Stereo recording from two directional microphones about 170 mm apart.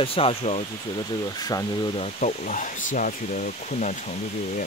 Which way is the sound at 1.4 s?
20° left (ahead or behind).